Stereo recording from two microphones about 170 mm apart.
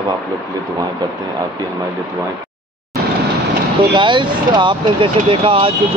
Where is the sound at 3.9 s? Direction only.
25° right (ahead or behind).